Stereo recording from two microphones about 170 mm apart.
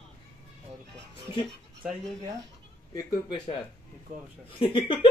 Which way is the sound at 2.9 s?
25° left (ahead or behind).